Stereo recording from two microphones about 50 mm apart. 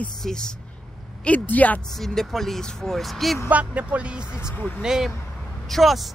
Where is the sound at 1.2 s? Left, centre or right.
Left.